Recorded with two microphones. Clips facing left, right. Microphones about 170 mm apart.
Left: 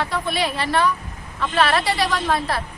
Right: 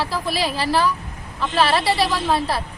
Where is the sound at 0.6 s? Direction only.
30° right (ahead or behind).